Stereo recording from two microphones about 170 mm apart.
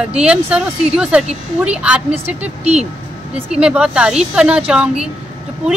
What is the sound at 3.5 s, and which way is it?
Speech, 5° right (ahead or behind).